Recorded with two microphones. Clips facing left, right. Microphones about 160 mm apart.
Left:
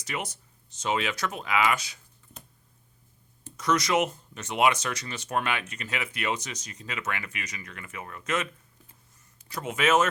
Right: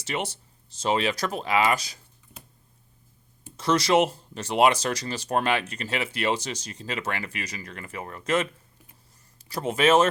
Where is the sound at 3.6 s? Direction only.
30° right (ahead or behind).